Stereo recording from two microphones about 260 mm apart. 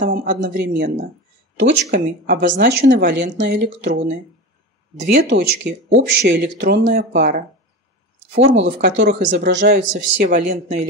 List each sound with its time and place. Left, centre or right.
0.0 s speech: right
8.5 s speech: right
9.5 s speech: right
9.9 s speech: right